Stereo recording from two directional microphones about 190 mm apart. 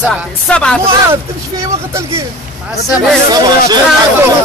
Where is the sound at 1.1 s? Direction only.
15° right (ahead or behind).